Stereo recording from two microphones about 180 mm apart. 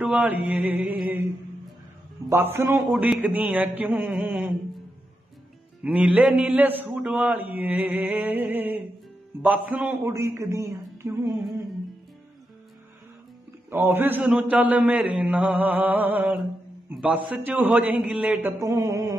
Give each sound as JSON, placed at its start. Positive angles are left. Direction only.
{"t": 0.0, "sound": "a man's voice", "side_deg": -10}
{"t": 2.2, "sound": "a man's voice", "side_deg": -15}
{"t": 2.9, "sound": "a man's voice", "side_deg": -5}
{"t": 5.9, "sound": "a man's voice", "side_deg": -10}
{"t": 13.7, "sound": "a man's voice", "side_deg": -10}
{"t": 18.6, "sound": "mantra", "side_deg": -20}